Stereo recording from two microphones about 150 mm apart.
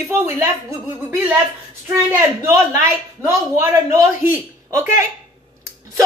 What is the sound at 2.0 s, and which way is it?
Speech, 15° right (ahead or behind).